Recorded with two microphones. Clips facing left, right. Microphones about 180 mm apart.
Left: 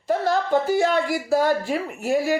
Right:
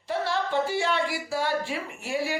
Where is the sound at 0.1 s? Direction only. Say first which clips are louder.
Left 7 dB; 45° left (ahead or behind).